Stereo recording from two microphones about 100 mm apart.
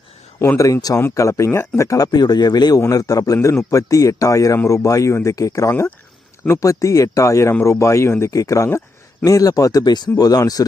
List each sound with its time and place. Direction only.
0.3 s speech: 30° left (ahead or behind)